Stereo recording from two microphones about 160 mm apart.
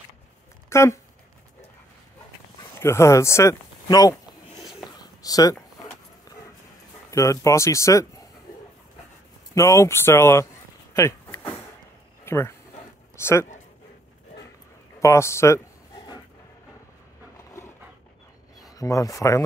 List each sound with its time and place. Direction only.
0.7 s speech: 15° left (ahead or behind)
2.7 s a sound: 15° left (ahead or behind)
5.2 s speech: 20° left (ahead or behind)
7.1 s speech: 20° left (ahead or behind)
9.5 s speech: 20° left (ahead or behind)
10.9 s vehicle: 20° left (ahead or behind)
12.3 s speech: 15° left (ahead or behind)
15.0 s speech: 20° left (ahead or behind)
18.7 s speech: 20° left (ahead or behind)